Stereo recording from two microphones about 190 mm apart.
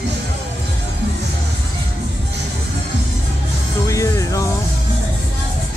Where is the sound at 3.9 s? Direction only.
15° left (ahead or behind).